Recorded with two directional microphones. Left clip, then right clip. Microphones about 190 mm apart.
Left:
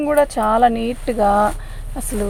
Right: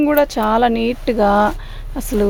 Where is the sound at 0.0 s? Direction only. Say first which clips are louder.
Right 1 dB; 55° right (ahead or behind).